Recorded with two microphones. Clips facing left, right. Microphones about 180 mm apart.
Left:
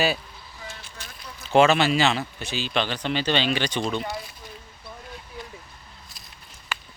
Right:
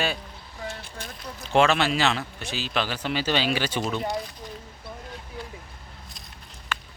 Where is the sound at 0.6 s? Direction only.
60° right (ahead or behind).